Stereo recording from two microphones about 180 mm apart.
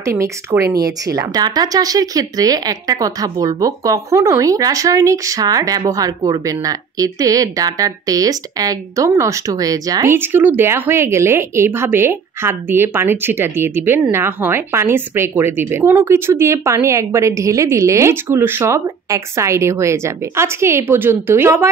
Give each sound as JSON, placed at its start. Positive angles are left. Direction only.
{"t": 0.0, "sound": "speech", "side_deg": -15}